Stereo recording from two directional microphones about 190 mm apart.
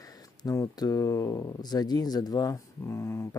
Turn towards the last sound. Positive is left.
turn(degrees=15)  # may be behind; listen again after turning